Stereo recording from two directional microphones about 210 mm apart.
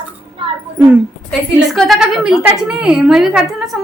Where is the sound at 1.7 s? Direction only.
Centre (ahead or behind).